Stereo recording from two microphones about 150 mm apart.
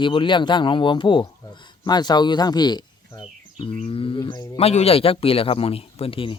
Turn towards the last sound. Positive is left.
turn(degrees=35)  # may be behind; listen again after turning